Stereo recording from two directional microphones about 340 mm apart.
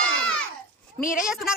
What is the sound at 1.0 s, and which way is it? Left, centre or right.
Speech, left.